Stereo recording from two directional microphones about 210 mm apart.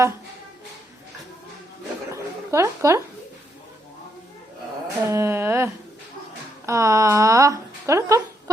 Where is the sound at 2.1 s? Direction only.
15° right (ahead or behind).